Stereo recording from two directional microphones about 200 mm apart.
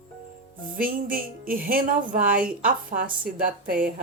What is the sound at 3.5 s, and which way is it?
Speech, 45° right (ahead or behind).